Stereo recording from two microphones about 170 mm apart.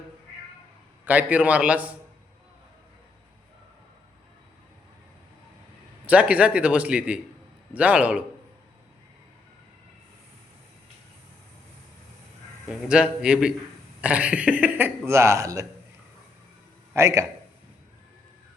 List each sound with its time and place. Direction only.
1.0 s speech: 10° right (ahead or behind)
6.1 s speech: 10° right (ahead or behind)
12.6 s a man's voice: 5° right (ahead or behind)
16.9 s speech: 15° right (ahead or behind)